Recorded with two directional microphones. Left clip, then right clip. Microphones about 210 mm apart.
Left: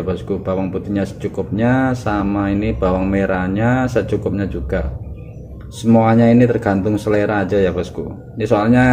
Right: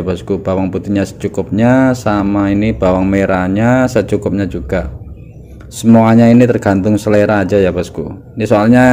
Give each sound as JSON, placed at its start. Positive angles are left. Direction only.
{"t": 0.0, "sound": "speech", "side_deg": -45}